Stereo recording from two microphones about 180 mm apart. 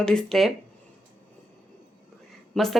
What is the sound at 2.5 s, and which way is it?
Speech, centre (ahead or behind).